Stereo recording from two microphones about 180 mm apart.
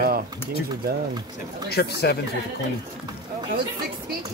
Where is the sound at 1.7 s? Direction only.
65° left (ahead or behind).